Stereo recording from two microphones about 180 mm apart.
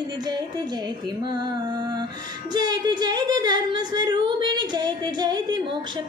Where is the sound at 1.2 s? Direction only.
25° right (ahead or behind).